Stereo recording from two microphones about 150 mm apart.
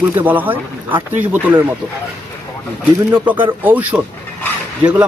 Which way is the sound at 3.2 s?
10° right (ahead or behind).